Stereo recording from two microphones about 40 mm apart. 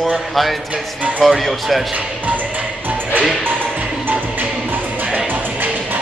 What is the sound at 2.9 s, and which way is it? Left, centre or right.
Music, right.